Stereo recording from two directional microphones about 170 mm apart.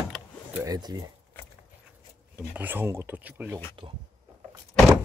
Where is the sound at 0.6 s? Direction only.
20° right (ahead or behind).